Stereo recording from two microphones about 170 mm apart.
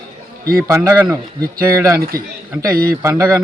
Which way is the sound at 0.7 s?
15° right (ahead or behind).